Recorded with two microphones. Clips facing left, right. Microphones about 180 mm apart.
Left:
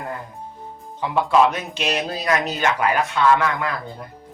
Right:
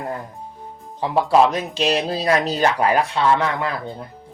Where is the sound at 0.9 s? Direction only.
35° right (ahead or behind).